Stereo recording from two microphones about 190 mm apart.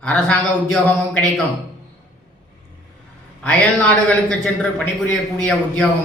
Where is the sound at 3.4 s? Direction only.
10° left (ahead or behind).